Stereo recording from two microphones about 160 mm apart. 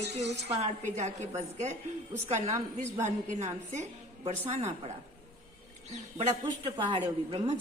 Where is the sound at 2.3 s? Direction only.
50° right (ahead or behind).